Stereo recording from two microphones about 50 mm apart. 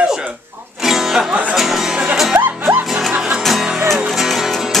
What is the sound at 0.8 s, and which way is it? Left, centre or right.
Music, centre.